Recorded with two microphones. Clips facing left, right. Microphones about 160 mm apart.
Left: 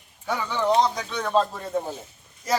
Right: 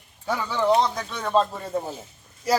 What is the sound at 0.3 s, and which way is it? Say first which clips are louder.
A man's voice: right 2 dB; 5° right (ahead or behind).